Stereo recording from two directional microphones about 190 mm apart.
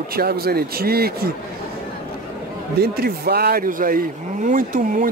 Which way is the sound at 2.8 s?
55° right (ahead or behind).